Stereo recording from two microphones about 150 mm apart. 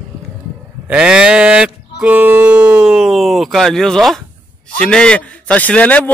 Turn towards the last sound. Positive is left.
turn(degrees=10)  # may be behind; listen again after turning